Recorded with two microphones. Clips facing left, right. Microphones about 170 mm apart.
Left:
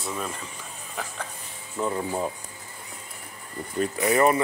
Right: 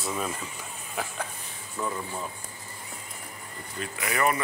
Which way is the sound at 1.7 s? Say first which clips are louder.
Left 5 dB; 25° left (ahead or behind).